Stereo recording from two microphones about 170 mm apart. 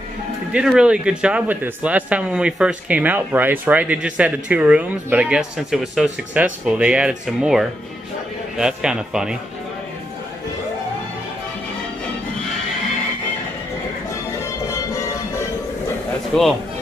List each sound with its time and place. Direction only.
0.5 s speech: 5° right (ahead or behind)
14.7 s music: 20° left (ahead or behind)
16.3 s speech: 5° left (ahead or behind)